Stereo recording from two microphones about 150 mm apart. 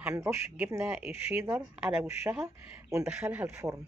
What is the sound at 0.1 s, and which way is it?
A woman's voice, 20° right (ahead or behind).